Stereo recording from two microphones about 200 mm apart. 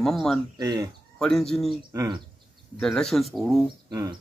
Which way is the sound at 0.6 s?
15° right (ahead or behind).